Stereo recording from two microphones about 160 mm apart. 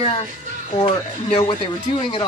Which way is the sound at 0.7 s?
40° left (ahead or behind).